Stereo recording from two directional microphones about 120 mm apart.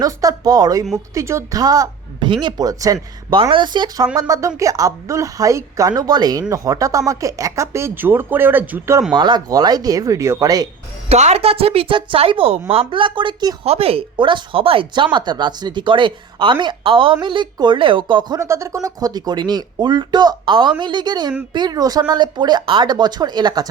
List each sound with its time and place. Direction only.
0.0 s speech: 30° right (ahead or behind)
3.5 s speech: 40° right (ahead or behind); by 9.0 s 15° right (ahead or behind)
9.1 s speech: 40° right (ahead or behind)
11.1 s speech: 60° right (ahead or behind); by 13.6 s 40° right (ahead or behind)
13.7 s speech: 55° right (ahead or behind)
18.3 s speech: 25° right (ahead or behind)